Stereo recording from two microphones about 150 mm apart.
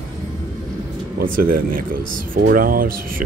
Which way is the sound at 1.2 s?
70° right (ahead or behind).